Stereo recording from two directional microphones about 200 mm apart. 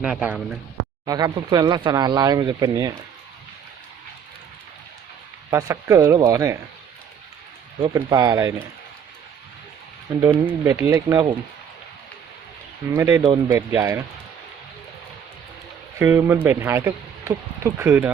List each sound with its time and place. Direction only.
0.0 s speech: 5° right (ahead or behind)
1.0 s speech: 20° right (ahead or behind)
5.5 s speech: 15° right (ahead or behind)
7.9 s speech: 20° right (ahead or behind)
10.1 s speech: 10° right (ahead or behind)
12.9 s speech: 10° right (ahead or behind)
16.0 s speech: 10° right (ahead or behind)